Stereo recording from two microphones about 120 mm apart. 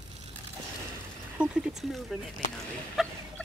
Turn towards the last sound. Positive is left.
turn(degrees=0)  # may be behind; listen again after turning